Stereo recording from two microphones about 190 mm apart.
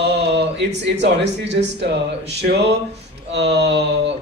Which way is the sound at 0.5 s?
65° right (ahead or behind).